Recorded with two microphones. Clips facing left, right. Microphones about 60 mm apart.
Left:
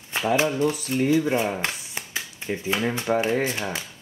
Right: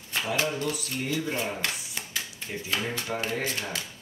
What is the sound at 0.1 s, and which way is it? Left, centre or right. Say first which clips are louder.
Speech: left 6 dB; left.